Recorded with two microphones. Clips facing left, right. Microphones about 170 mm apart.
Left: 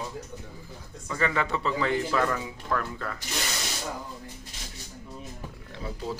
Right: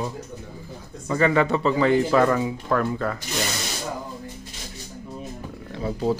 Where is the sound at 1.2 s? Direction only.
65° right (ahead or behind).